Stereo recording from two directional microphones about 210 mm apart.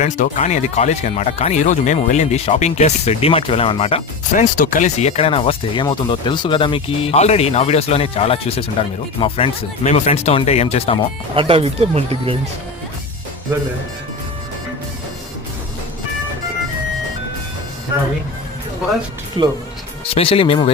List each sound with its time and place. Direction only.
0.0 s speech: 35° left (ahead or behind)
11.3 s speech: 25° right (ahead or behind)
19.4 s speech: 25° right (ahead or behind)
20.1 s speech: 25° left (ahead or behind)